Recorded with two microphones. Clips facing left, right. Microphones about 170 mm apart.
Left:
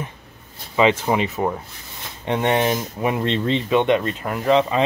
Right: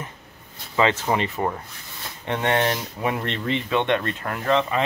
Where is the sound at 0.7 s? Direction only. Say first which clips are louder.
Left 3 dB; 15° left (ahead or behind).